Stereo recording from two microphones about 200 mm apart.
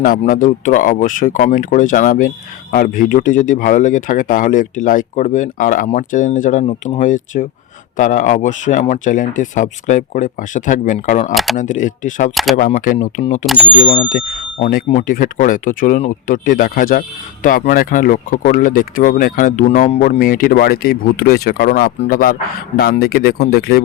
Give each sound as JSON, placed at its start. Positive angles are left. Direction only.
{"t": 0.2, "sound": "speech", "side_deg": 40}
{"t": 12.3, "sound": "speech", "side_deg": 0}
{"t": 12.5, "sound": "speech", "side_deg": 40}
{"t": 13.4, "sound": "speech", "side_deg": 0}
{"t": 13.8, "sound": "speech", "side_deg": 30}